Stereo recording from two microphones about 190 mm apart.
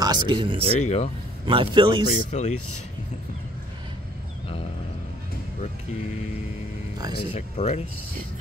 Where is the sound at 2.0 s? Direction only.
35° left (ahead or behind).